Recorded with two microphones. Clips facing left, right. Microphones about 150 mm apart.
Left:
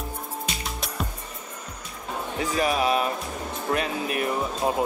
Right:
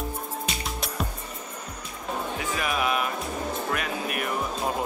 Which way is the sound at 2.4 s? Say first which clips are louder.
Left 7 dB; 35° left (ahead or behind).